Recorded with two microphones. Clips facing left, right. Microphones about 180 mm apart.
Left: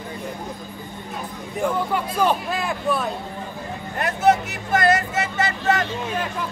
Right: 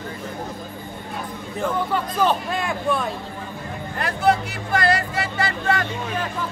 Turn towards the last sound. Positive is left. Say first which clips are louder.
# left 1 dB
turn(degrees=20)  # may be behind; listen again after turning